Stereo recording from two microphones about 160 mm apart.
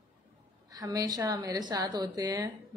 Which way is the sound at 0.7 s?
25° right (ahead or behind).